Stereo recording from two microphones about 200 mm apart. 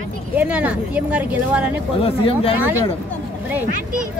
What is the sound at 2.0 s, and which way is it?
Speech, 30° left (ahead or behind).